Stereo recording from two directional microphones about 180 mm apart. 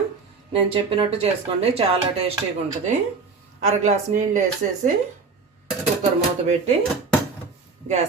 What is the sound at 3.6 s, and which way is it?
Speech, 40° right (ahead or behind).